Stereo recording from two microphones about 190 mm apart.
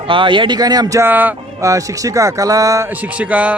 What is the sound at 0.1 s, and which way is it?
Speech, 25° right (ahead or behind).